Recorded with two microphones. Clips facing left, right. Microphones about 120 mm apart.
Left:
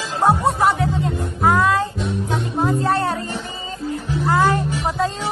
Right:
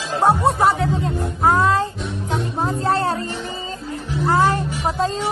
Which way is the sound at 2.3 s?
30° right (ahead or behind).